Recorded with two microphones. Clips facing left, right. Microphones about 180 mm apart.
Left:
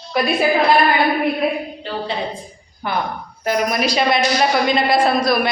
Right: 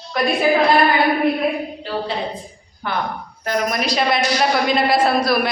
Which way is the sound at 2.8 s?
15° left (ahead or behind).